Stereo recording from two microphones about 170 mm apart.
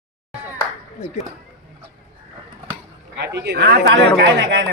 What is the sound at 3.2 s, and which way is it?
Speech, 80° right.